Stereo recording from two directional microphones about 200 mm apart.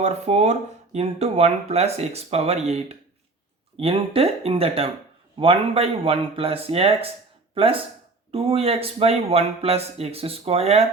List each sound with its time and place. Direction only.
0.0 s speech: 35° right (ahead or behind)